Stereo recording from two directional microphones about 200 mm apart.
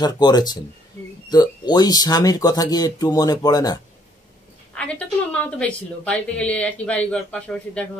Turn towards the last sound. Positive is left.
turn(degrees=5)  # may be behind; listen again after turning